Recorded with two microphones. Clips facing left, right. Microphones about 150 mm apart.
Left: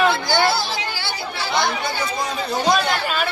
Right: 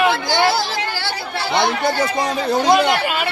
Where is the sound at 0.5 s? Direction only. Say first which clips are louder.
Right 3 dB; 90° right.